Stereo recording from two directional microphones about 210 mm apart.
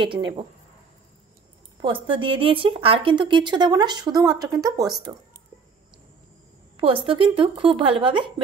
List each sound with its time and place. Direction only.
0.0 s speech: 25° right (ahead or behind)
1.8 s speech: 25° right (ahead or behind)
7.1 s speech: 25° right (ahead or behind)